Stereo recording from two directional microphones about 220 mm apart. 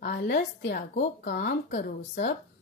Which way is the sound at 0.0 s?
45° left (ahead or behind).